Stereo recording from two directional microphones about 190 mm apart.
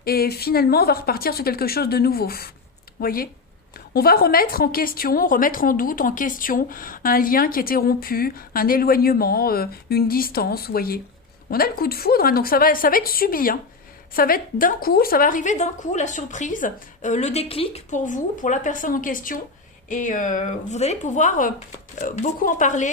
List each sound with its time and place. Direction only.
0.0 s a woman's voice: 55° left (ahead or behind)